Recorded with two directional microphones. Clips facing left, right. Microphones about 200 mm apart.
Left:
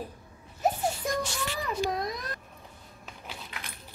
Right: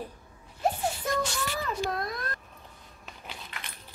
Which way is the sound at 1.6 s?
15° left (ahead or behind).